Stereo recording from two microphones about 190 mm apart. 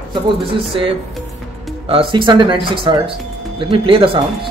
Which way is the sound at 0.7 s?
30° right (ahead or behind).